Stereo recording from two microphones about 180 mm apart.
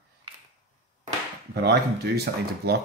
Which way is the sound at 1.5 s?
65° right (ahead or behind).